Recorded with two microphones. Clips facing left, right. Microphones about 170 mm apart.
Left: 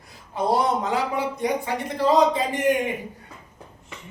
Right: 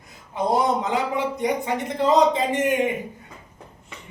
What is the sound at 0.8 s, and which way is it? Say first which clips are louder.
Speech: right 1 dB; 20° right (ahead or behind).